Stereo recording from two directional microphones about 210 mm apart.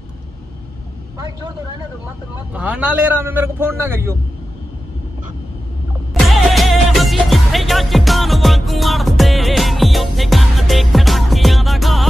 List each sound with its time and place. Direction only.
1.1 s speech: 20° right (ahead or behind)
2.5 s a man's voice: 5° right (ahead or behind)
6.1 s music: centre (ahead or behind)